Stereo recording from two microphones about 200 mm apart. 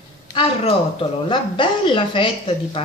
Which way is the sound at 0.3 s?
30° left (ahead or behind).